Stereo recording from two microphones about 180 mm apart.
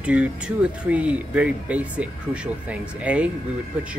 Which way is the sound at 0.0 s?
5° right (ahead or behind).